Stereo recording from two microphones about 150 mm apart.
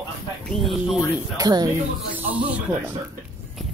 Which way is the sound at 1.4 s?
25° right (ahead or behind).